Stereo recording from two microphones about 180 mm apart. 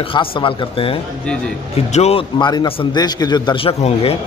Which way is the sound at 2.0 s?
35° left (ahead or behind).